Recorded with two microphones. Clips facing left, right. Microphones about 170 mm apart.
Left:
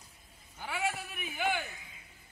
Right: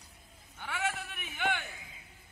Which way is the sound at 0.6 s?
10° left (ahead or behind).